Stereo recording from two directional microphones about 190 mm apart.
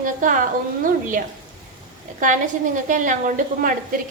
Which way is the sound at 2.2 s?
45° right (ahead or behind).